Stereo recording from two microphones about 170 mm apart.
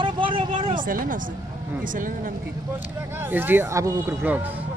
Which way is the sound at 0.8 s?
55° right (ahead or behind).